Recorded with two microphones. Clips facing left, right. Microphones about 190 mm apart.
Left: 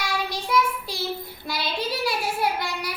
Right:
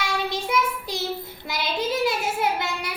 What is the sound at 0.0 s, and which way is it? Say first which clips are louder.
Child singing: right 2 dB; 20° right (ahead or behind).